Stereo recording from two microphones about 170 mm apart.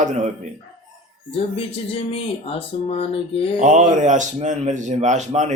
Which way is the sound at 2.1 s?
35° left (ahead or behind).